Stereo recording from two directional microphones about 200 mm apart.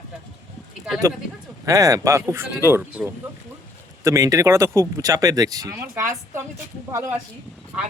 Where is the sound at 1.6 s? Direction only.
15° right (ahead or behind).